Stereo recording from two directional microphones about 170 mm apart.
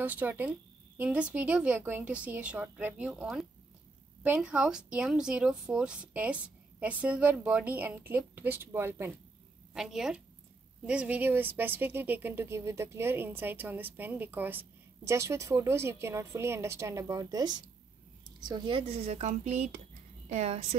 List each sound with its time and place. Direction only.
0.0 s speech: 10° right (ahead or behind)
9.8 s a woman's voice: 5° right (ahead or behind); by 20.6 s 40° right (ahead or behind)